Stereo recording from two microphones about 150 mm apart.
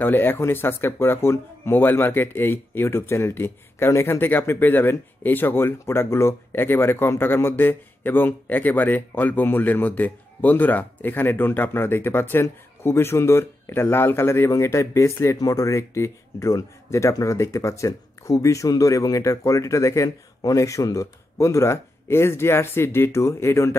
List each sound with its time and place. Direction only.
0.0 s speech: 15° left (ahead or behind)